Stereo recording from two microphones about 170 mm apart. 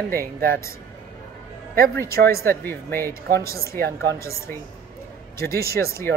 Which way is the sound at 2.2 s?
65° right (ahead or behind).